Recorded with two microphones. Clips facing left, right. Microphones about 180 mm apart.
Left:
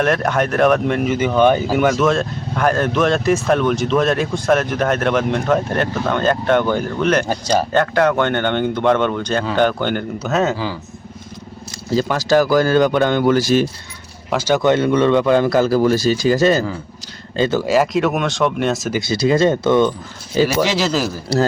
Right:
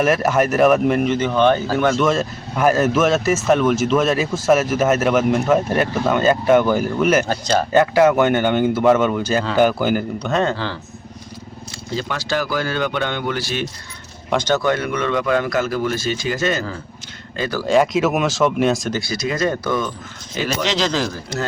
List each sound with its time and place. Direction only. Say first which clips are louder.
0.0 s speech: right 1 dB; 5° right (ahead or behind)
1.1 s speech: left 2 dB; 10° left (ahead or behind)
2.0 s speech: left 2 dB; 5° right (ahead or behind)
7.3 s speech: left 1 dB; 10° left (ahead or behind)
7.7 s speech: right 5 dB; 5° right (ahead or behind)
11.9 s speech: left 8 dB; 40° left (ahead or behind)
14.3 s speech: left 1 dB; 5° left (ahead or behind)
14.6 s speech: left 6 dB; 25° left (ahead or behind)
17.3 s speech: left 6 dB; 25° left (ahead or behind)
17.7 s speech: right 5 dB; centre (ahead or behind)
18.9 s speech: left 6 dB; 25° left (ahead or behind)
20.5 s speech: left 3 dB; 10° left (ahead or behind)
21.3 s speech: left 11 dB; 35° left (ahead or behind)